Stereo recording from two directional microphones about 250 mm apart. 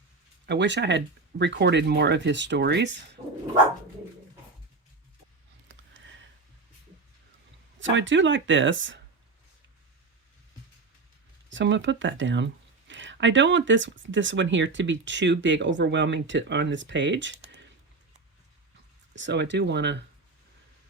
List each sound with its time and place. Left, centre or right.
0.4 s speech: right
5.6 s a sound: right
7.8 s speech: right
11.4 s speech: right
19.1 s speech: right